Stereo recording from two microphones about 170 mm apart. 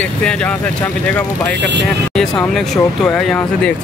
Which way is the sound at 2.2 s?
5° left (ahead or behind).